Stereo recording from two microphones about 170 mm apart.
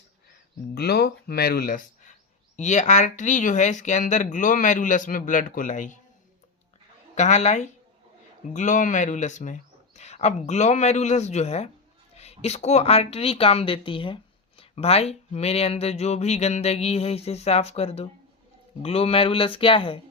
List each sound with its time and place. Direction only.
0.7 s speech: 70° left (ahead or behind)
2.6 s speech: 45° left (ahead or behind)
7.2 s speech: 45° left (ahead or behind)